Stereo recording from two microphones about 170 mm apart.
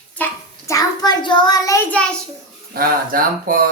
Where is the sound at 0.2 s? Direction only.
10° left (ahead or behind).